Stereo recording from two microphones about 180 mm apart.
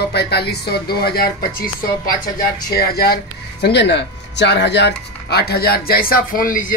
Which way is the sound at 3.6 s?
70° left (ahead or behind).